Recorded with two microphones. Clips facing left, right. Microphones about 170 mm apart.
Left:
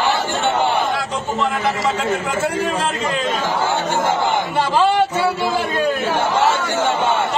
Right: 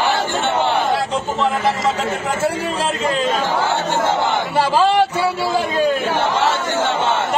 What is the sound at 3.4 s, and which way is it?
Speech, 10° left (ahead or behind).